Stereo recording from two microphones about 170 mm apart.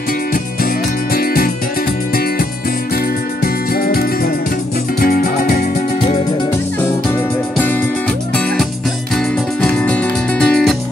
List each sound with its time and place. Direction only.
1.1 s music: 60° left (ahead or behind)
3.7 s music: 60° left (ahead or behind)
9.1 s music: 5° left (ahead or behind)